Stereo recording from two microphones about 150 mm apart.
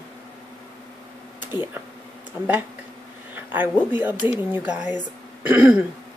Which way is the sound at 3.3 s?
10° right (ahead or behind).